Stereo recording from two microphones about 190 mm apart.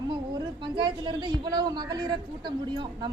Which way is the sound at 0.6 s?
25° right (ahead or behind).